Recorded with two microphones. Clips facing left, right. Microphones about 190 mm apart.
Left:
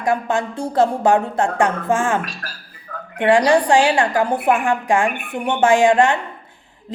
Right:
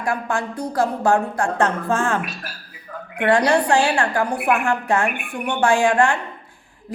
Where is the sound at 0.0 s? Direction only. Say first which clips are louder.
Left 4 dB; 20° left (ahead or behind).